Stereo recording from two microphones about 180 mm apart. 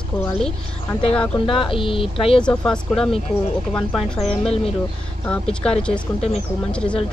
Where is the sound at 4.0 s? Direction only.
35° left (ahead or behind).